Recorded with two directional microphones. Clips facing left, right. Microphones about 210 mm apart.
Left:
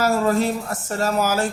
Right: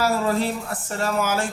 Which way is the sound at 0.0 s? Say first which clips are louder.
Left 3 dB; 45° left (ahead or behind).